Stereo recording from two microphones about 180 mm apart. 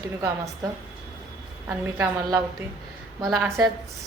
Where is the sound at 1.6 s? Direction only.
10° right (ahead or behind).